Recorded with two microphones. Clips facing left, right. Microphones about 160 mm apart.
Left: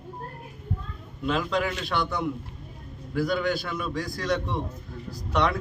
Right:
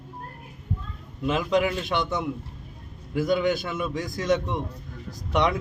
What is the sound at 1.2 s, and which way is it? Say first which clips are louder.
A man's voice: right 3 dB; 20° right (ahead or behind).